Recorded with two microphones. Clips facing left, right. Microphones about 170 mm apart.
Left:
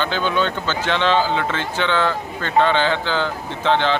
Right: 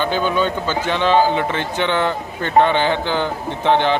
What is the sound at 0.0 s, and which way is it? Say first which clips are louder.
Speech: right 2 dB; 10° right (ahead or behind).